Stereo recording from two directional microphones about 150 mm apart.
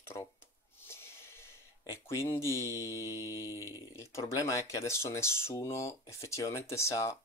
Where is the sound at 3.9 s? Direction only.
20° left (ahead or behind).